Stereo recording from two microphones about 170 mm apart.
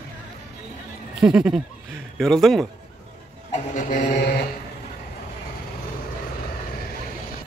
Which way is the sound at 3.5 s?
50° left (ahead or behind).